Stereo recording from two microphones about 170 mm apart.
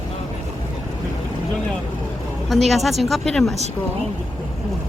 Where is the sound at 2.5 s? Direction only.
Centre (ahead or behind).